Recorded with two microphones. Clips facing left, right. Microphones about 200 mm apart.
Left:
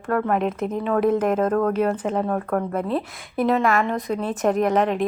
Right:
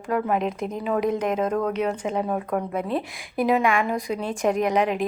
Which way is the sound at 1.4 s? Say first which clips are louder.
Left 3 dB; 55° left (ahead or behind).